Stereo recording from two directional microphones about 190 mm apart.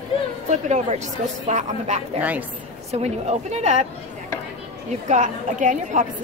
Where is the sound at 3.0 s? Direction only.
35° right (ahead or behind).